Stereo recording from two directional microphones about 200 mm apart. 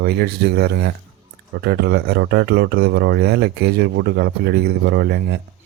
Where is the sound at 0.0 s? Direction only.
55° right (ahead or behind).